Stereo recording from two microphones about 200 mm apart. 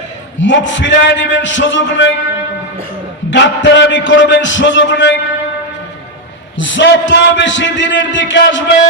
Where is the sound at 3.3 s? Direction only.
65° left (ahead or behind).